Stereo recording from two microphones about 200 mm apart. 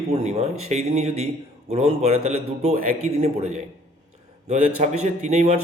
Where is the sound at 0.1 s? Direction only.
30° right (ahead or behind).